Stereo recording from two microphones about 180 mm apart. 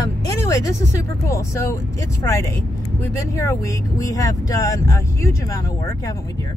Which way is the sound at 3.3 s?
20° left (ahead or behind).